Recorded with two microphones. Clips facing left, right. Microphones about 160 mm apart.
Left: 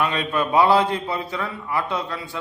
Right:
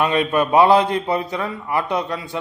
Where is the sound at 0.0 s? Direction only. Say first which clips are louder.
Right 5 dB; 20° right (ahead or behind).